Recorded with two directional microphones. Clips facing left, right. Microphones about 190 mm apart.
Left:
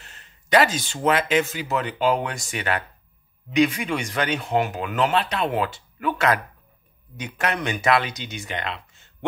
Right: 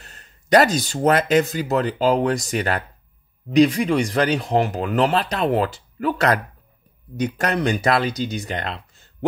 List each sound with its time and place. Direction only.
0.0 s speech: 40° right (ahead or behind)